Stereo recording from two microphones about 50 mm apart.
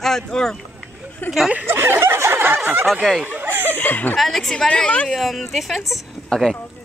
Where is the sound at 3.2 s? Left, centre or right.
Right.